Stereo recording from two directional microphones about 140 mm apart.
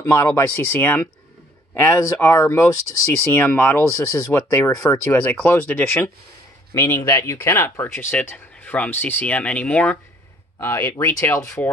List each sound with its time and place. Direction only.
0.0 s speech: 20° left (ahead or behind)
3.3 s speech: 10° left (ahead or behind)